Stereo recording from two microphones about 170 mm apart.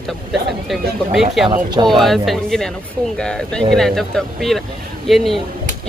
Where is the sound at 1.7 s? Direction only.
25° right (ahead or behind).